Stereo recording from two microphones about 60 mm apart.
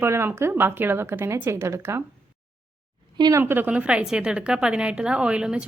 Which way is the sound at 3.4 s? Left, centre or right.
Right.